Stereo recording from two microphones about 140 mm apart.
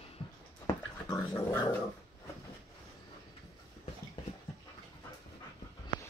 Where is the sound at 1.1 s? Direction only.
15° left (ahead or behind).